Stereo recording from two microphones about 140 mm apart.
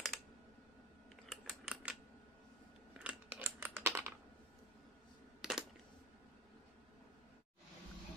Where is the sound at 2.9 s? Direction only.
10° right (ahead or behind).